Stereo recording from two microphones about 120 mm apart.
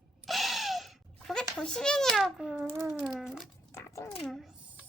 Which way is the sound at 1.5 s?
5° left (ahead or behind).